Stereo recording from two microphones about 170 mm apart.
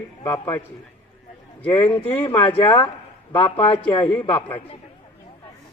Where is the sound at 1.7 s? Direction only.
30° left (ahead or behind).